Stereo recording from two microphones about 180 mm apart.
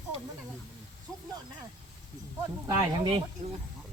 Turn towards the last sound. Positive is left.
turn(degrees=-25)  # may be behind; listen again after turning